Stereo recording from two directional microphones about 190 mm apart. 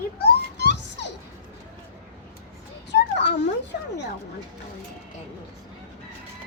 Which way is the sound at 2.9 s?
65° left (ahead or behind).